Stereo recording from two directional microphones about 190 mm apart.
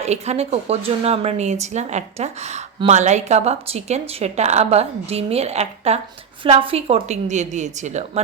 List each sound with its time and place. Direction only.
0.0 s a woman's voice: 35° right (ahead or behind)